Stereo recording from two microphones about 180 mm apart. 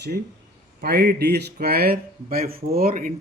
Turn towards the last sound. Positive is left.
turn(degrees=-50)  # may be behind; listen again after turning